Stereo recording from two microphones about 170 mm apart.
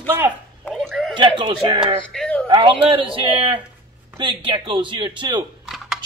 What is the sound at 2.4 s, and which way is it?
A man's voice, 30° right (ahead or behind).